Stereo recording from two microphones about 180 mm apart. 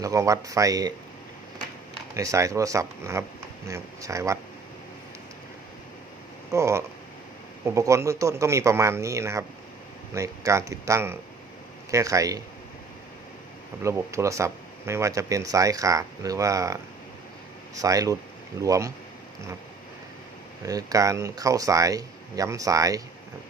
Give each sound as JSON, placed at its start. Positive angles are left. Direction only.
{"t": 0.0, "sound": "speech", "side_deg": -20}
{"t": 2.1, "sound": "speech", "side_deg": -15}
{"t": 6.5, "sound": "speech", "side_deg": -15}
{"t": 13.8, "sound": "speech", "side_deg": -15}
{"t": 17.7, "sound": "speech", "side_deg": -20}
{"t": 20.6, "sound": "speech", "side_deg": -20}